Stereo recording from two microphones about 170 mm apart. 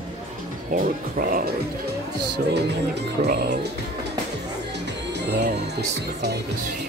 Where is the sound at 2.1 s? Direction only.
75° right (ahead or behind).